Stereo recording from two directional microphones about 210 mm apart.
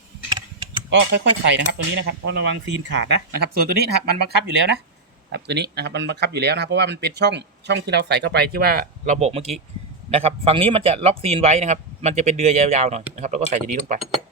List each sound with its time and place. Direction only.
0.3 s typing: 20° right (ahead or behind)
0.9 s speech: 55° right (ahead or behind)
5.3 s speech: 55° right (ahead or behind)
9.1 s a man's voice: 30° right (ahead or behind)